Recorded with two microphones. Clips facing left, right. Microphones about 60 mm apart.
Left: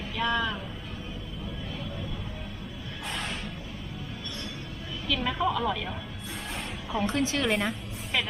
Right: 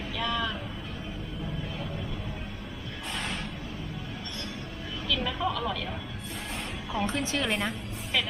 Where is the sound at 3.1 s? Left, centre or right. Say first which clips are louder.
Even; centre.